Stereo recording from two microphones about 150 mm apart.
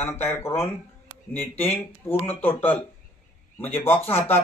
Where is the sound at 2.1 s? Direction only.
15° left (ahead or behind).